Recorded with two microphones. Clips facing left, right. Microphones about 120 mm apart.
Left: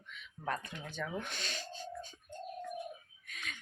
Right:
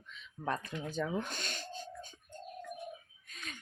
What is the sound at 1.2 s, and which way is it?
Speech, 45° right (ahead or behind).